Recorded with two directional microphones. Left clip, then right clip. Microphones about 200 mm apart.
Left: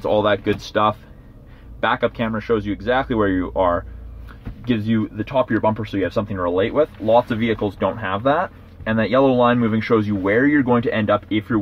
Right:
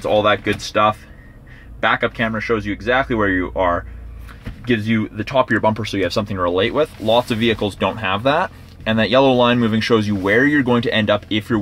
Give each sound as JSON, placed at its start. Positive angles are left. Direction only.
{"t": 0.0, "sound": "speech", "side_deg": 0}